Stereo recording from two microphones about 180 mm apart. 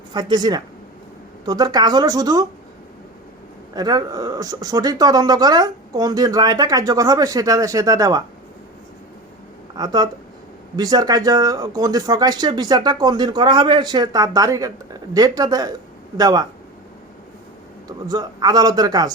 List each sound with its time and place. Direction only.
0.1 s speech: 25° right (ahead or behind)
3.8 s speech: 20° right (ahead or behind)
9.7 s speech: 25° right (ahead or behind)
17.8 s speech: 20° right (ahead or behind)